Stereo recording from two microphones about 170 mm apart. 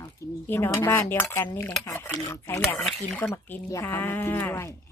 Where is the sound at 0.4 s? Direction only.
15° left (ahead or behind).